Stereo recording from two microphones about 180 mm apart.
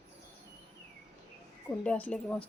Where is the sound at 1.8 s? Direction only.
5° left (ahead or behind).